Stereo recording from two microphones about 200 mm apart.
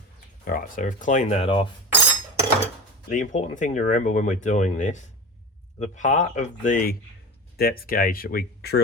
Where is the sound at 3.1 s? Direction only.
40° left (ahead or behind).